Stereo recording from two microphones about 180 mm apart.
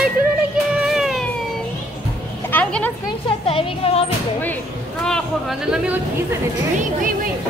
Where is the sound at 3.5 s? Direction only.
30° left (ahead or behind).